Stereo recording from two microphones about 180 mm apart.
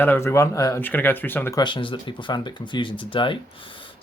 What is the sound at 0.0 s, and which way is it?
Speech, 10° left (ahead or behind).